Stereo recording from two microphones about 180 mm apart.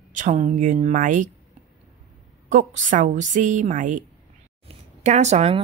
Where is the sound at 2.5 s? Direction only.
45° right (ahead or behind).